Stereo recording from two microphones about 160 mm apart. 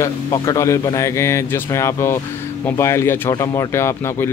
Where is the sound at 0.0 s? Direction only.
20° left (ahead or behind).